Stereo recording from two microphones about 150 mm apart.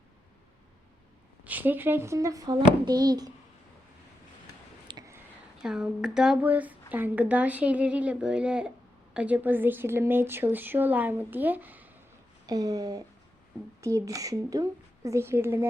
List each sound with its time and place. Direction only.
1.5 s speech: 10° right (ahead or behind)
4.9 s a sound: 25° right (ahead or behind)
5.6 s speech: 5° right (ahead or behind)
12.5 s speech: 25° right (ahead or behind)